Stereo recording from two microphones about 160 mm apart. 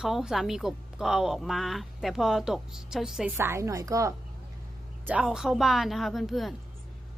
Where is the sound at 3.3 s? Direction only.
15° right (ahead or behind).